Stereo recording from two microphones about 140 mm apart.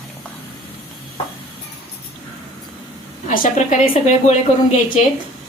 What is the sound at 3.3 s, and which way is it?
A woman's voice, 65° left (ahead or behind).